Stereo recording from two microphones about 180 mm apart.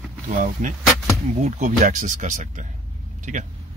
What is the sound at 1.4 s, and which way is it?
Speech, 40° right (ahead or behind).